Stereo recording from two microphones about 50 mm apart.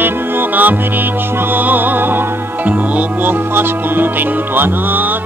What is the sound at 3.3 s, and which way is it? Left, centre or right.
Music, right.